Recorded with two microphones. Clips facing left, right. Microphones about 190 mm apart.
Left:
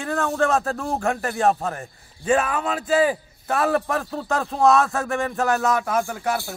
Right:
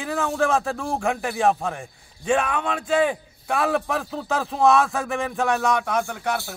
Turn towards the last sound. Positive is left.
turn(degrees=5)  # may be behind; listen again after turning